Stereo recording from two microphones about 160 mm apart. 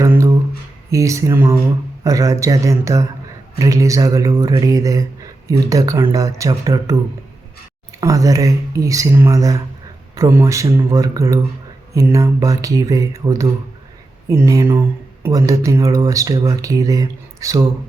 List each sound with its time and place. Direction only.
0.0 s a sound: 20° right (ahead or behind)
0.9 s speech: 20° right (ahead or behind)
8.0 s speech: 20° right (ahead or behind)